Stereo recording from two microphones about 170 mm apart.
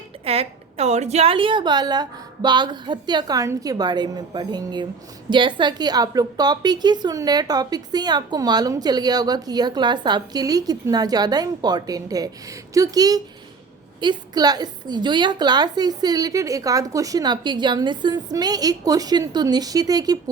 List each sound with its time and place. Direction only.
0.3 s a woman's voice: 35° right (ahead or behind)